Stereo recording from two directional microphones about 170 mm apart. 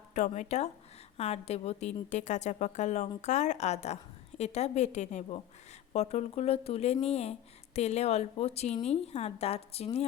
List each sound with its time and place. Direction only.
0.1 s a woman's voice: 45° left (ahead or behind)